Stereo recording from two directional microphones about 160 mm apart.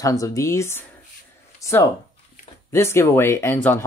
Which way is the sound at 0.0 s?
20° left (ahead or behind).